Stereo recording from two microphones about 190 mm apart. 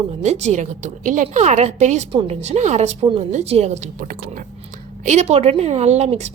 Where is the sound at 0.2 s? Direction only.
35° right (ahead or behind).